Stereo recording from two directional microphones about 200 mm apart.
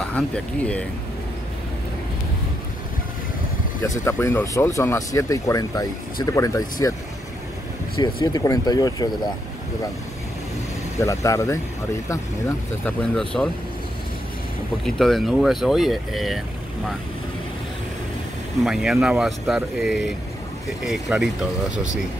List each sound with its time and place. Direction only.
0.0 s speech: 5° left (ahead or behind)
4.0 s speech: 15° left (ahead or behind)
8.0 s speech: 20° left (ahead or behind)
11.0 s speech: 15° left (ahead or behind)
13.1 s speech: 5° left (ahead or behind)
14.9 s speech: centre (ahead or behind)
18.6 s speech: 5° right (ahead or behind)